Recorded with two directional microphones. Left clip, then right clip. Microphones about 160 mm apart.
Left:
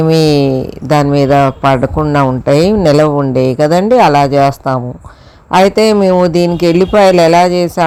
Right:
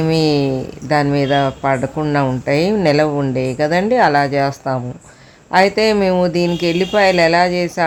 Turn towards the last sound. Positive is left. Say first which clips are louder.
# left 6 dB
turn(degrees=25)  # may be behind; listen again after turning